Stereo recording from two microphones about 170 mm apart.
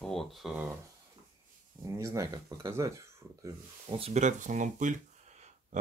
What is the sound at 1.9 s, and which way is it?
Speech, 20° right (ahead or behind).